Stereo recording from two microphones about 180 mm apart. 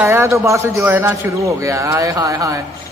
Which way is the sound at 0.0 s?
15° right (ahead or behind).